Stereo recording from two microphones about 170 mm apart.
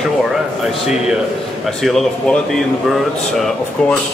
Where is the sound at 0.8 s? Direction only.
5° right (ahead or behind).